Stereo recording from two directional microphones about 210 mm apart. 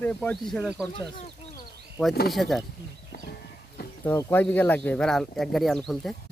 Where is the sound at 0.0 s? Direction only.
5° left (ahead or behind).